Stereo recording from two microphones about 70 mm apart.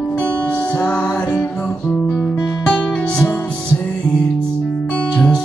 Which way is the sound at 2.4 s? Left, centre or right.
Centre.